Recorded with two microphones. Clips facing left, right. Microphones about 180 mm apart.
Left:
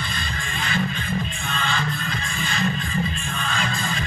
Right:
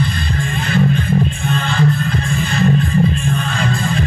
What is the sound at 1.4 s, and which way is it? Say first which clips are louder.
Music: right 10 dB; 55° right (ahead or behind).